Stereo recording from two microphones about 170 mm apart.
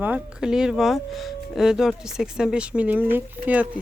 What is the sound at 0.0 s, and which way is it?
Speech, 5° right (ahead or behind).